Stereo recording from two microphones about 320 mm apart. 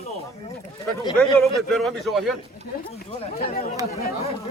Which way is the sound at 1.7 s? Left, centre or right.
Centre.